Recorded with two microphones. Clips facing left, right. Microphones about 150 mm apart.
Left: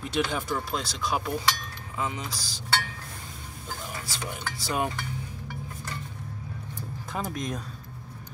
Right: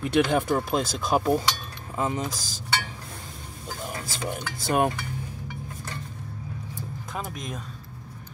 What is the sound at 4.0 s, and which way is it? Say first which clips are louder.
Speech: right 3 dB; 50° right (ahead or behind).